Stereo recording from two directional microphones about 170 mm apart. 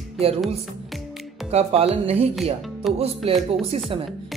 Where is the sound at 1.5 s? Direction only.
40° right (ahead or behind).